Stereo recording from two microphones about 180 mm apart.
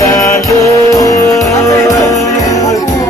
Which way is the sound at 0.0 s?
20° left (ahead or behind).